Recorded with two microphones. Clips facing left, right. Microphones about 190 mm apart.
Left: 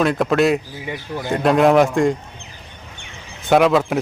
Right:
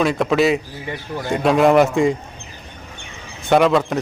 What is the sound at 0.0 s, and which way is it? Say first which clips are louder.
A man's voice: even; centre (ahead or behind).